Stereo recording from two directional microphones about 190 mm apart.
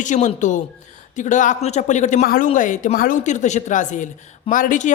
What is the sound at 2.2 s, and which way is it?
A woman's voice, 50° left (ahead or behind).